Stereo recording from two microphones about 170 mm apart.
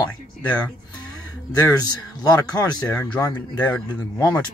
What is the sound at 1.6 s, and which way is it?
Speech, 20° left (ahead or behind).